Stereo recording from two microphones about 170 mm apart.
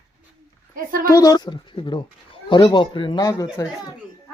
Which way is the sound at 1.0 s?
20° left (ahead or behind).